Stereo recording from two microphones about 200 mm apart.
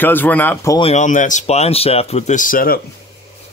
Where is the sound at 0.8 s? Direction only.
35° left (ahead or behind).